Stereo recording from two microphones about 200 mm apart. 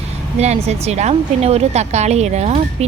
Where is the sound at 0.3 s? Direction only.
35° right (ahead or behind).